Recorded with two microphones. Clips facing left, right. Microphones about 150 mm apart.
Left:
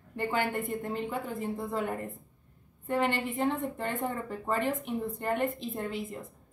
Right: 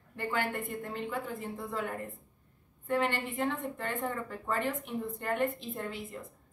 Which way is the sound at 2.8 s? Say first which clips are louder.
Left 2 dB; 20° left (ahead or behind).